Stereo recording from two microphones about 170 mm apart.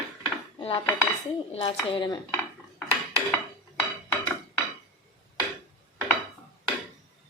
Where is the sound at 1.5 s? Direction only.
30° left (ahead or behind).